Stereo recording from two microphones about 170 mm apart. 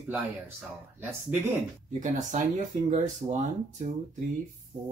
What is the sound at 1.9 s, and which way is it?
Speech, 45° right (ahead or behind).